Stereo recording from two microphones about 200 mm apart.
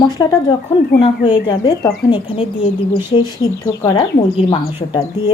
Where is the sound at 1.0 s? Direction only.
30° left (ahead or behind).